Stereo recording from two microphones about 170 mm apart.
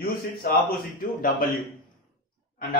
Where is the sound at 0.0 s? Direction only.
65° left (ahead or behind).